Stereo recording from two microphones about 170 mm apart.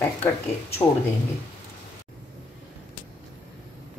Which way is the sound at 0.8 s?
20° left (ahead or behind).